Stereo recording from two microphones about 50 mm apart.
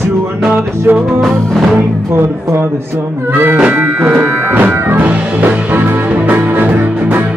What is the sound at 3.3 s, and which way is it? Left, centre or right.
Music, right.